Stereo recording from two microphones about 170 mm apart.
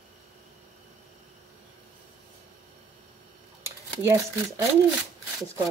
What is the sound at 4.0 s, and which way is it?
Speech, 20° right (ahead or behind).